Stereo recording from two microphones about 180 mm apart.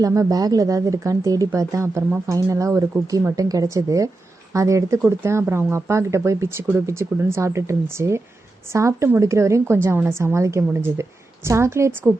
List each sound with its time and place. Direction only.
0.0 s a woman's voice: 20° right (ahead or behind)